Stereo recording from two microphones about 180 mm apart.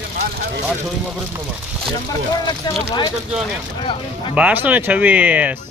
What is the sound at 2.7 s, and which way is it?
Speech, 25° left (ahead or behind).